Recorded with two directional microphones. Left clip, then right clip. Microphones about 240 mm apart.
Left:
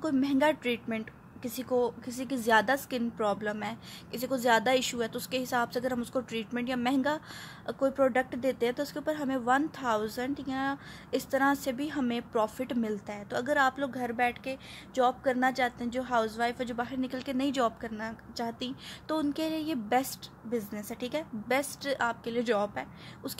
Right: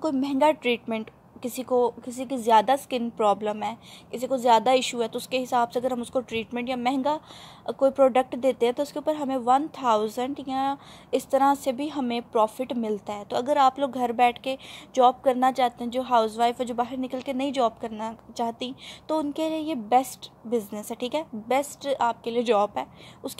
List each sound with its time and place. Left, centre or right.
0.2 s a woman's voice: centre
5.1 s a woman's voice: centre
5.5 s a woman's voice: centre